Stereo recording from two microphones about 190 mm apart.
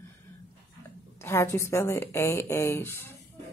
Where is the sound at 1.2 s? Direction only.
15° left (ahead or behind).